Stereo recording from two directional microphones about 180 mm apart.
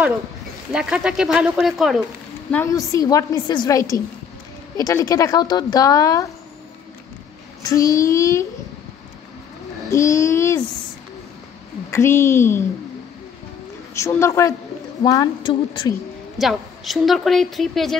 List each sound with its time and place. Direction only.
0.7 s a woman's voice: 5° right (ahead or behind)
2.5 s a woman's voice: 15° left (ahead or behind)
7.6 s child singing: 20° left (ahead or behind)
9.8 s child singing: 15° left (ahead or behind)
11.9 s child singing: 15° left (ahead or behind)
13.9 s child singing: 15° left (ahead or behind)
15.0 s a woman's voice: 25° left (ahead or behind)
16.3 s a woman's voice: centre (ahead or behind)